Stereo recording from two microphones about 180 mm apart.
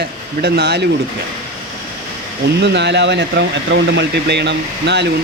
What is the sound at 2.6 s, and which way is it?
Speech, 70° right (ahead or behind).